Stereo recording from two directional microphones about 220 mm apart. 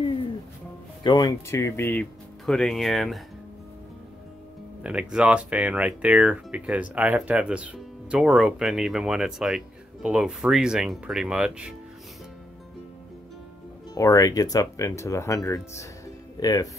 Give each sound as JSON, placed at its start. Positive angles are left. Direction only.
{"t": 1.0, "sound": "speech", "side_deg": 15}
{"t": 4.8, "sound": "speech", "side_deg": -5}
{"t": 13.9, "sound": "speech", "side_deg": 15}